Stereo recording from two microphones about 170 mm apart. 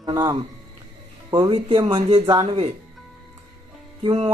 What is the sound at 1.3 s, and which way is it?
Speech, 30° right (ahead or behind).